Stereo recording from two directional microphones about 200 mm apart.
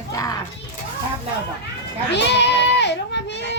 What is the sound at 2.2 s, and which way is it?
Goat, 60° left (ahead or behind).